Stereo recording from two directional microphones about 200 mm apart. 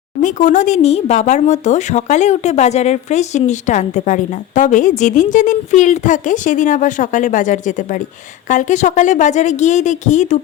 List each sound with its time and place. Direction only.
0.2 s speech: 40° left (ahead or behind)